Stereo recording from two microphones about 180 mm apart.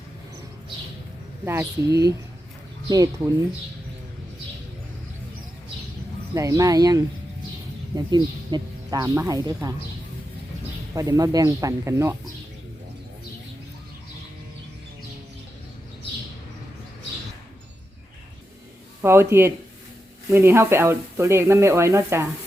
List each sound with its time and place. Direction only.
1.5 s speech: 15° right (ahead or behind)
6.3 s speech: 20° right (ahead or behind)
10.9 s speech: 20° right (ahead or behind)
19.0 s speech: 15° right (ahead or behind)